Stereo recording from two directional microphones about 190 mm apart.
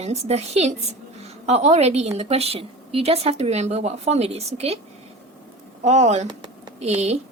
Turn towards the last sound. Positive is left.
turn(degrees=-35)  # may be behind; listen again after turning